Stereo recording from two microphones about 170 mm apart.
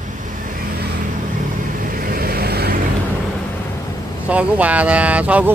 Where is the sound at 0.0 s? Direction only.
50° right (ahead or behind); by 2.8 s 65° right (ahead or behind).